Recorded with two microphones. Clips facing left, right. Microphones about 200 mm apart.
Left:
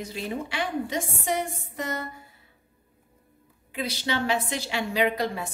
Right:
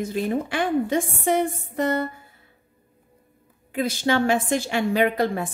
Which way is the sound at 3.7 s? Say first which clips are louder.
Right 7 dB; 50° right (ahead or behind).